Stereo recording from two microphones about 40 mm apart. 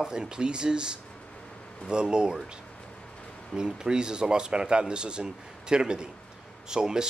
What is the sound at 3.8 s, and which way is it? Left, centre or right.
Speech, centre.